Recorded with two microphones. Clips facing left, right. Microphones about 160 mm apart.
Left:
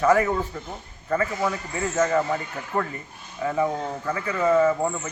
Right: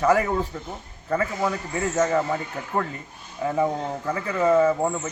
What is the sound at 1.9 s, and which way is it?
A man's voice, 20° right (ahead or behind).